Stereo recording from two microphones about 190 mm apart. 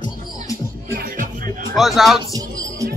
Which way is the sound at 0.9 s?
45° right (ahead or behind).